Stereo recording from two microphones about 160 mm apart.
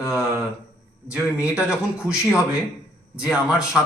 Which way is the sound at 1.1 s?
5° right (ahead or behind).